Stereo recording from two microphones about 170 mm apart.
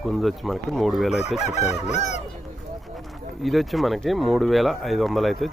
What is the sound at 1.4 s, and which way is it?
Chicken, 40° left (ahead or behind).